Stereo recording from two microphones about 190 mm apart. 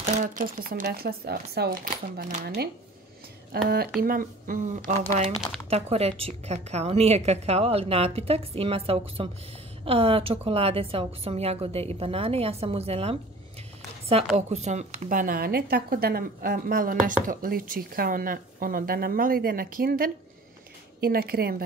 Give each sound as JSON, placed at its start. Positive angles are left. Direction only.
{"t": 0.0, "sound": "a woman's voice", "side_deg": -45}
{"t": 5.7, "sound": "a woman's voice", "side_deg": -35}
{"t": 14.3, "sound": "a woman's voice", "side_deg": -35}